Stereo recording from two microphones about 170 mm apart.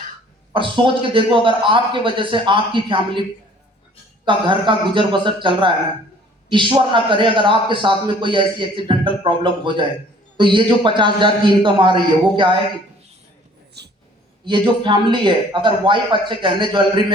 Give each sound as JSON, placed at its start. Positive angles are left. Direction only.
{"t": 0.5, "sound": "a man's voice", "side_deg": -30}
{"t": 4.3, "sound": "a man's voice", "side_deg": -30}
{"t": 13.8, "sound": "speech", "side_deg": -80}
{"t": 14.4, "sound": "a man's voice", "side_deg": -30}